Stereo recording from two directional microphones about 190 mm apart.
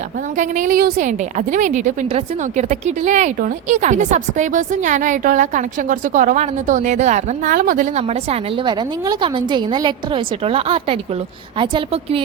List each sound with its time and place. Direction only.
0.3 s a woman's voice: 40° right (ahead or behind); by 12.2 s 25° right (ahead or behind)